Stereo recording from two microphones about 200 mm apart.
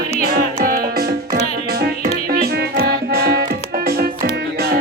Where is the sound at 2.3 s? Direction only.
50° right (ahead or behind).